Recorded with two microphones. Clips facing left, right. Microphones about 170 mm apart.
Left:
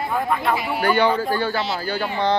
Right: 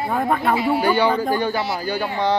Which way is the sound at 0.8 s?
10° right (ahead or behind).